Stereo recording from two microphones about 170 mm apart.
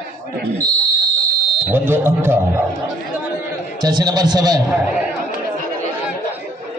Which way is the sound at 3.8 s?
25° right (ahead or behind).